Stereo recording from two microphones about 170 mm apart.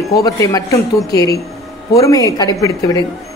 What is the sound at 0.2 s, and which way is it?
A man's voice, 20° left (ahead or behind).